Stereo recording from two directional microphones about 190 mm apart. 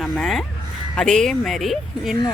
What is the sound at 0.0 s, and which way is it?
Speech, centre (ahead or behind).